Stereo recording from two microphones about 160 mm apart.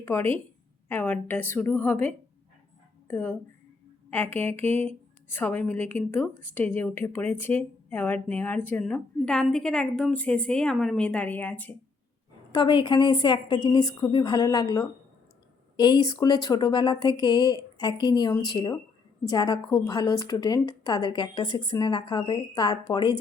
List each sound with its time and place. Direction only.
0.0 s a woman's voice: 15° left (ahead or behind)
12.5 s a woman's voice: 30° left (ahead or behind)